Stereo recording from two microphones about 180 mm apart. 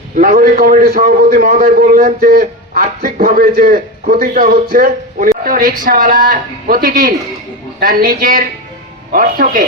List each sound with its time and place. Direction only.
0.2 s a man's voice: 55° right (ahead or behind)